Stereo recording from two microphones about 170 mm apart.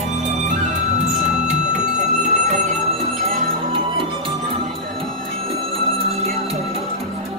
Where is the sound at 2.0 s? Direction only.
45° right (ahead or behind).